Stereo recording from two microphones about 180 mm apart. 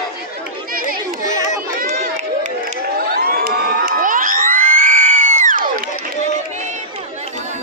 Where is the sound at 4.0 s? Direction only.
50° right (ahead or behind).